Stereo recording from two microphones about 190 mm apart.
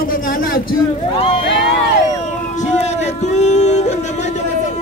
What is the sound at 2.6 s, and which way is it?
Speech, 35° left (ahead or behind).